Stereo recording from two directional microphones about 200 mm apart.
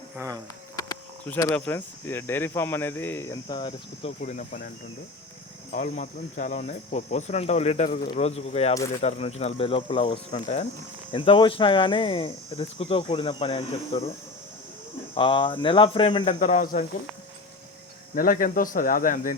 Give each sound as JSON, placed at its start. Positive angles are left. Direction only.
{"t": 0.2, "sound": "speech", "side_deg": -15}
{"t": 1.2, "sound": "speech", "side_deg": 10}
{"t": 4.2, "sound": "speech", "side_deg": 40}
{"t": 5.7, "sound": "speech", "side_deg": 40}
{"t": 7.9, "sound": "speech", "side_deg": 45}
{"t": 8.1, "sound": "speech", "side_deg": 30}
{"t": 15.1, "sound": "speech", "side_deg": 25}
{"t": 18.1, "sound": "speech", "side_deg": 45}